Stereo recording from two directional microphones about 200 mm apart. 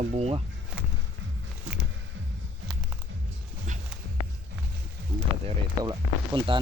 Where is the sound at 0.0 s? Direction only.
35° right (ahead or behind).